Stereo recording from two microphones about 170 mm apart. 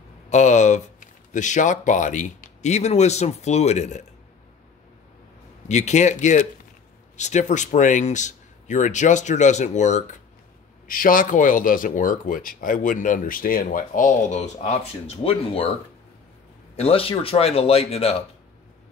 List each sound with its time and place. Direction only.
0.3 s speech: 45° left (ahead or behind)
5.7 s speech: 45° left (ahead or behind)
10.9 s speech: 55° left (ahead or behind); by 15.7 s 35° left (ahead or behind)
16.7 s speech: 35° left (ahead or behind)